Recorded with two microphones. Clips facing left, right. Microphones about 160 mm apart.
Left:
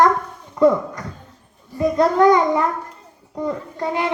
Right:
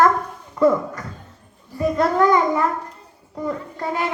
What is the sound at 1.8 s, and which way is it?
Child singing, 20° left (ahead or behind).